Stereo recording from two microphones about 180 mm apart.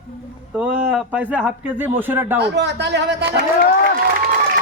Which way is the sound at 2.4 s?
70° right (ahead or behind).